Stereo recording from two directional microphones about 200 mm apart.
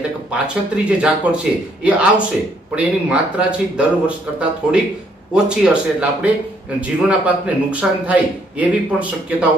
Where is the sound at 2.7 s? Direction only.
5° right (ahead or behind).